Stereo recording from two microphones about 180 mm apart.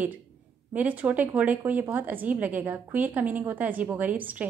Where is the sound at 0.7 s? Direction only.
10° right (ahead or behind).